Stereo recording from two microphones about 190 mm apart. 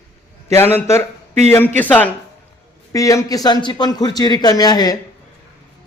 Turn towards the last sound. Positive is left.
turn(degrees=20)  # may be behind; listen again after turning